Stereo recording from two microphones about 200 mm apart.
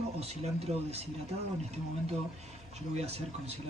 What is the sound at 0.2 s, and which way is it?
Speech, 30° right (ahead or behind).